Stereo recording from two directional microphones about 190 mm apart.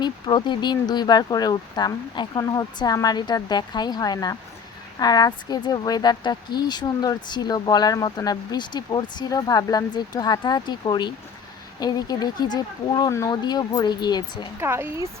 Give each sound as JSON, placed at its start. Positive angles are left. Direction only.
{"t": 0.0, "sound": "speech", "side_deg": 25}
{"t": 14.6, "sound": "speech", "side_deg": -10}